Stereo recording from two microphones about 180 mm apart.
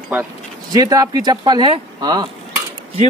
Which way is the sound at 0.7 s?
20° right (ahead or behind).